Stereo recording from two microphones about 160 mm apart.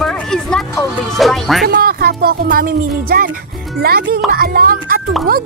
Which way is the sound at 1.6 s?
70° right (ahead or behind).